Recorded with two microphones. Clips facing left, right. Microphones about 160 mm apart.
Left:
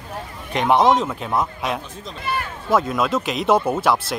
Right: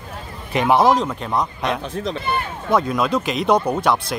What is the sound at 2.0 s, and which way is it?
Speech, 70° right (ahead or behind).